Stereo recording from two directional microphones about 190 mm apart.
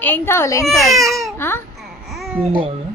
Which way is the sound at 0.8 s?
Centre (ahead or behind).